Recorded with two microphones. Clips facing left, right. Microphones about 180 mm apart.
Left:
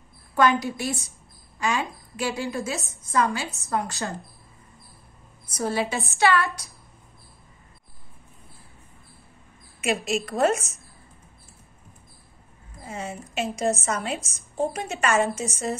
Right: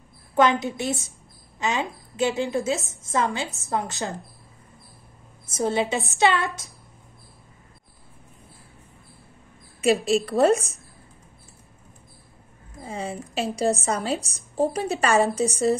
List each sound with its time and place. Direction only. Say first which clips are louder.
0.3 s a woman's voice: right 1 dB; 20° right (ahead or behind)
5.5 s a woman's voice: right 3 dB; 25° right (ahead or behind)
9.8 s a woman's voice: right 5 dB; 35° right (ahead or behind)
12.8 s a woman's voice: right 3 dB; 30° right (ahead or behind)